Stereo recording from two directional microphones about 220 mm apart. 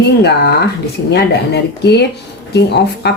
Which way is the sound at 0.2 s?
50° left (ahead or behind).